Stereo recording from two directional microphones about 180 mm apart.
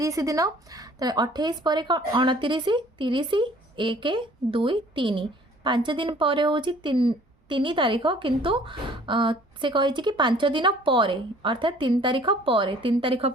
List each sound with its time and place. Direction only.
0.0 s speech: 20° right (ahead or behind)